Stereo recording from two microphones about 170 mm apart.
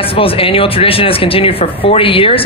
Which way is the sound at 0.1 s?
30° left (ahead or behind).